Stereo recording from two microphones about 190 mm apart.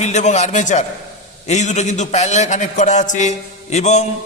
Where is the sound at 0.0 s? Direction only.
35° left (ahead or behind).